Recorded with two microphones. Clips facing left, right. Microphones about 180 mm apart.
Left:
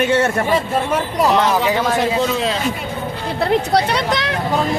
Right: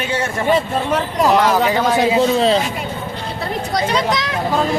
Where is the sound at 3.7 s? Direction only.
60° left (ahead or behind).